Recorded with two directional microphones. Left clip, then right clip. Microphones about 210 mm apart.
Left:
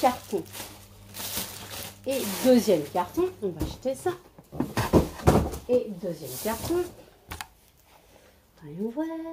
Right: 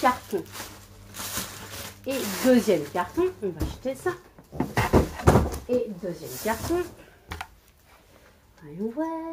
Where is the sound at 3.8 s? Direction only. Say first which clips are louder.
Left 1 dB; 15° left (ahead or behind).